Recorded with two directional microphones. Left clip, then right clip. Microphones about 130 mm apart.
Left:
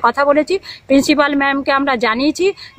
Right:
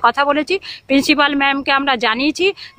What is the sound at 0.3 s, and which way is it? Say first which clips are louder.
A woman's voice: left 3 dB; 40° right (ahead or behind).